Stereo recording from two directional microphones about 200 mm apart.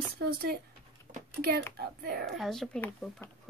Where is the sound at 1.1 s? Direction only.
50° right (ahead or behind).